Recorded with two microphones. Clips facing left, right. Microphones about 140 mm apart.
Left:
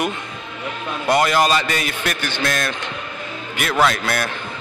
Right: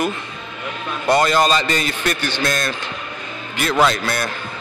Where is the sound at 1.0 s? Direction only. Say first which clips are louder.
Right 1 dB; 10° left (ahead or behind).